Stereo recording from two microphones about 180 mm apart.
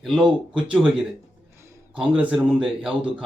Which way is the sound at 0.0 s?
Centre (ahead or behind).